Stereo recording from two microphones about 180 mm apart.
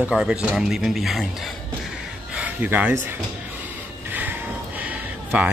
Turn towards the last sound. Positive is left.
turn(degrees=-5)  # may be behind; listen again after turning